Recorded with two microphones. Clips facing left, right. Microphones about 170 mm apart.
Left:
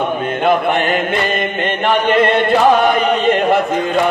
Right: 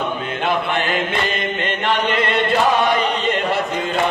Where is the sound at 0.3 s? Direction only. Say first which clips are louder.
Left 7 dB; 55° left (ahead or behind).